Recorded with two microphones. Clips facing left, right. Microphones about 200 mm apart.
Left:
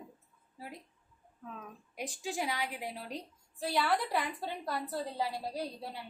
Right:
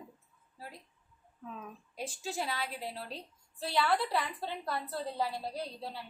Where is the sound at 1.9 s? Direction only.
15° left (ahead or behind).